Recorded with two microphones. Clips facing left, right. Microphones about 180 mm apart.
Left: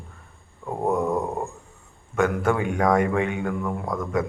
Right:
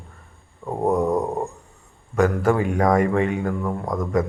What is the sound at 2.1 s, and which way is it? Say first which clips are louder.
Speech: right 3 dB; centre (ahead or behind).